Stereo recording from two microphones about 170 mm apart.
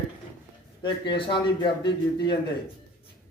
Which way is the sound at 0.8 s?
30° left (ahead or behind).